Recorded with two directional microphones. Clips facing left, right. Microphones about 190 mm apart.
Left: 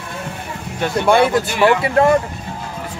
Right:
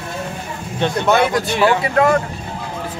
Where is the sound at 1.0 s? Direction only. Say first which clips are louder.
Left 3 dB; 10° left (ahead or behind).